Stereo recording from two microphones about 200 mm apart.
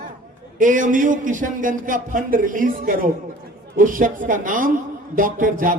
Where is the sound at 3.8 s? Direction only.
45° right (ahead or behind).